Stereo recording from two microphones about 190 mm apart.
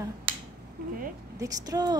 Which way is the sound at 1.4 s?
20° right (ahead or behind).